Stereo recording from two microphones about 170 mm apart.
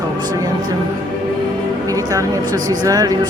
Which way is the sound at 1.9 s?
20° right (ahead or behind).